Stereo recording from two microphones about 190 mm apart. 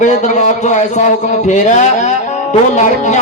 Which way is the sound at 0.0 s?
40° left (ahead or behind).